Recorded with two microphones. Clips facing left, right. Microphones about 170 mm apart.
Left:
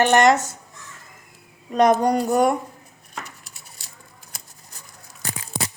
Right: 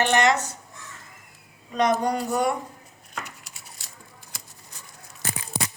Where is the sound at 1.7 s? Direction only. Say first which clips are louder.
Left 5 dB; 45° left (ahead or behind).